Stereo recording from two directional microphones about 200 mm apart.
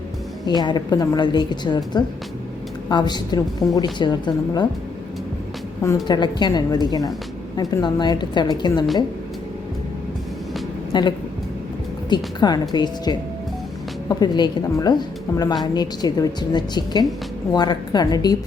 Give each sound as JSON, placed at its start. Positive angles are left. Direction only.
{"t": 0.4, "sound": "a woman's voice", "side_deg": 20}
{"t": 6.1, "sound": "a woman's voice", "side_deg": 20}
{"t": 10.9, "sound": "a woman's voice", "side_deg": 20}